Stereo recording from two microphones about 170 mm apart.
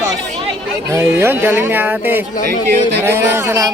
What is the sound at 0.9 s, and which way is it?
A man's voice, 15° right (ahead or behind).